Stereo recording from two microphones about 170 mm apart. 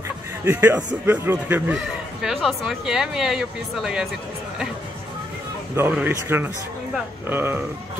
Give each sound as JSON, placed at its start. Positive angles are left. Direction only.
{"t": 0.5, "sound": "speech", "side_deg": -10}
{"t": 5.8, "sound": "speech", "side_deg": -10}